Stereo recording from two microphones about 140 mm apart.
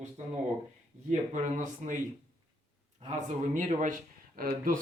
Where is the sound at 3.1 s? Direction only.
60° right (ahead or behind); by 4.8 s 85° right.